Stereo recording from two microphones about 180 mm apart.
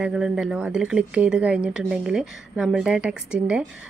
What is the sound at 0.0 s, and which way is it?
A woman's voice, 5° right (ahead or behind).